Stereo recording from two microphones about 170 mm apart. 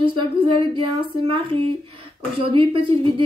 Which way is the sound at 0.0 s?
30° right (ahead or behind).